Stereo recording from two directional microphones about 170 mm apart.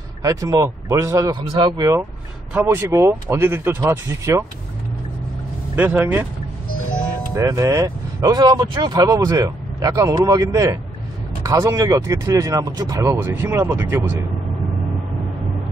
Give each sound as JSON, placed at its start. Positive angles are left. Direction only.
{"t": 0.2, "sound": "speech", "side_deg": -20}
{"t": 5.8, "sound": "speech", "side_deg": -10}
{"t": 7.3, "sound": "speech", "side_deg": -20}